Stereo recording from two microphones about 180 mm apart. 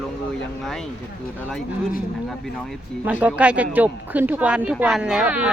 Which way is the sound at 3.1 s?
10° right (ahead or behind).